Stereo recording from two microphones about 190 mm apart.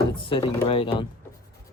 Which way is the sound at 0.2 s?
30° left (ahead or behind).